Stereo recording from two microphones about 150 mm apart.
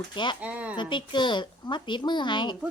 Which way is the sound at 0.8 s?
30° left (ahead or behind).